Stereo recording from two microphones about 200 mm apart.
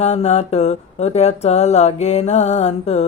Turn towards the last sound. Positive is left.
turn(degrees=35)  # may be behind; listen again after turning